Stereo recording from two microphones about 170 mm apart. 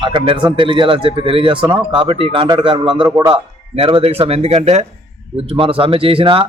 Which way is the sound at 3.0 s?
15° right (ahead or behind).